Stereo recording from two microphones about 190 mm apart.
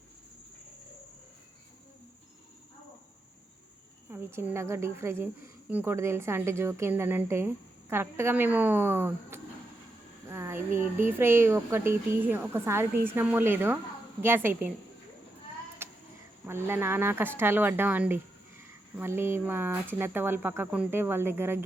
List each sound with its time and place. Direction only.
4.1 s a woman's voice: 15° right (ahead or behind)
15.8 s a sound: 10° right (ahead or behind)
16.5 s a woman's voice: 15° right (ahead or behind)